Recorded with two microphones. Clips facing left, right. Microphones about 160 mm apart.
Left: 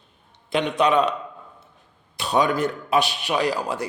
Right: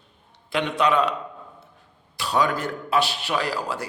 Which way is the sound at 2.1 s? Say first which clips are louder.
Left 2 dB; 20° left (ahead or behind).